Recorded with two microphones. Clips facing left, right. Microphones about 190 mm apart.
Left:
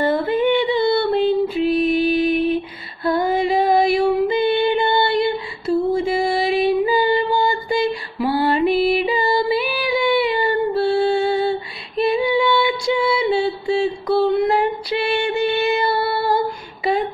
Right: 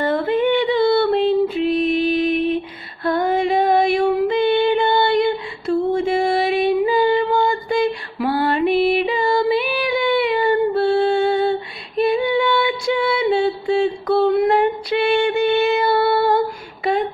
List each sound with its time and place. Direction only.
0.0 s female singing: 5° left (ahead or behind)
8.4 s music: 5° left (ahead or behind)
9.0 s female singing: 5° left (ahead or behind)
11.0 s music: 5° left (ahead or behind)
12.0 s female singing: 50° right (ahead or behind)
12.4 s music: centre (ahead or behind)